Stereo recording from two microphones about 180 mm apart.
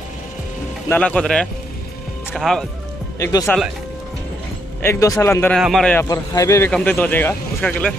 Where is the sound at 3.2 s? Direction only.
20° left (ahead or behind).